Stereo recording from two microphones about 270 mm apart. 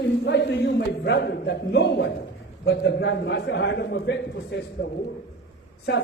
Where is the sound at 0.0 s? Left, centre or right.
Left.